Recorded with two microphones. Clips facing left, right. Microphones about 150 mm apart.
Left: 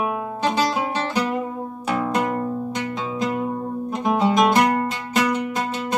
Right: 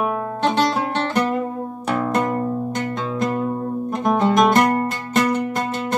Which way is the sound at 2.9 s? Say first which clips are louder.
Right 1 dB; 55° right (ahead or behind).